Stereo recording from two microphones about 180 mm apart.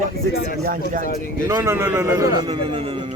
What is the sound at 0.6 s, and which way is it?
Speech, 50° right (ahead or behind).